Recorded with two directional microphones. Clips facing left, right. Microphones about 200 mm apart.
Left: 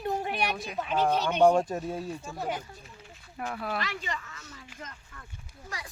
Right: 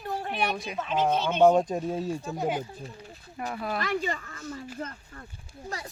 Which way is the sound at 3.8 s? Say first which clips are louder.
Right 6 dB; 45° right (ahead or behind).